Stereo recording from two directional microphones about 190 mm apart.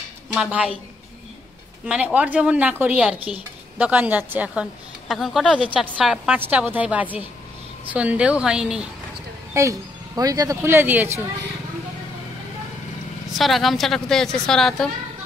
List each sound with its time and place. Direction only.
0.3 s speech: 5° right (ahead or behind)
1.9 s a woman's voice: 5° right (ahead or behind)
9.5 s speech: 15° right (ahead or behind)
13.4 s a woman's voice: centre (ahead or behind)